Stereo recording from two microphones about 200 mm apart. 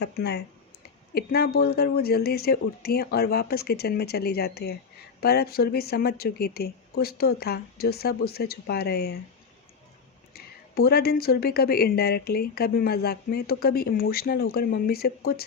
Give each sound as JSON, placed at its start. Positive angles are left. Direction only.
{"t": 0.0, "sound": "speech", "side_deg": 55}
{"t": 10.3, "sound": "speech", "side_deg": 50}